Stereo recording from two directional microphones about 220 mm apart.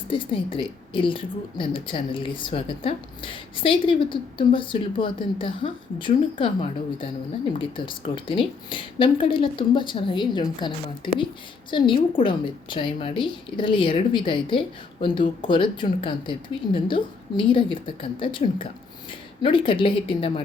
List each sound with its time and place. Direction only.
0.1 s a woman's voice: 25° left (ahead or behind)